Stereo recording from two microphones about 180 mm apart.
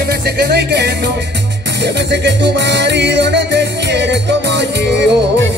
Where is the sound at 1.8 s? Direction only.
75° right (ahead or behind).